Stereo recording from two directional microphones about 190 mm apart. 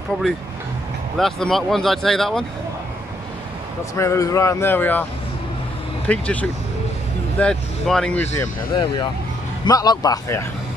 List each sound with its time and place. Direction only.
1.1 s speech: centre (ahead or behind)
3.9 s speech: 15° left (ahead or behind)
6.0 s speech: 5° left (ahead or behind)
9.7 s a man's voice: 20° left (ahead or behind)